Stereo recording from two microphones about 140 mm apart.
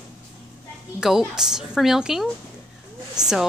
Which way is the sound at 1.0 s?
5° right (ahead or behind).